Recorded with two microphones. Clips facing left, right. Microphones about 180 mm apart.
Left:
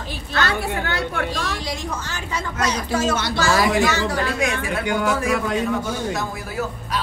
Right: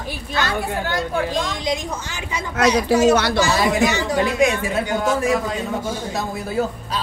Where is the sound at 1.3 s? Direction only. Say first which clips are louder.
Right 4 dB; 20° right (ahead or behind).